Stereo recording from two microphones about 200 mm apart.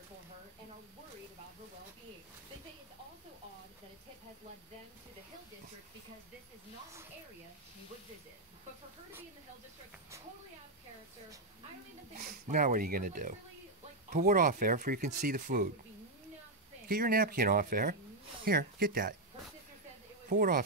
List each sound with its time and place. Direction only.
12.2 s speech: 40° right (ahead or behind)
16.9 s speech: 45° right (ahead or behind)
20.2 s speech: 45° right (ahead or behind)